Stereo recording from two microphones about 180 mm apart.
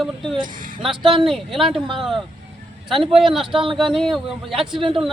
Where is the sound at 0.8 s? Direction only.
Centre (ahead or behind).